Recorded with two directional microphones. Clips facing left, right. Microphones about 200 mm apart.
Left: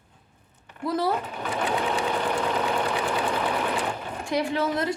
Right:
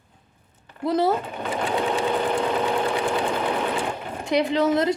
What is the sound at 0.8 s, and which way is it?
Speech, 20° right (ahead or behind).